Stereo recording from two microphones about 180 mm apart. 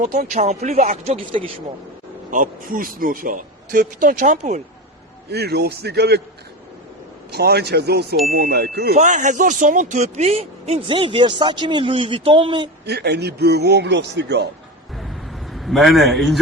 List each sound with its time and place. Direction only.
0.0 s speech: 40° right (ahead or behind)
2.3 s speech: 50° right (ahead or behind)
5.3 s a man's voice: 65° right (ahead or behind)
7.3 s a man's voice: 65° right (ahead or behind)
8.9 s a man's voice: 40° right (ahead or behind)
12.8 s a man's voice: 65° right (ahead or behind)
14.9 s a sound: centre (ahead or behind)